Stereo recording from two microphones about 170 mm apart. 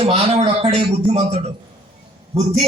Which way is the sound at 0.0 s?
35° right (ahead or behind).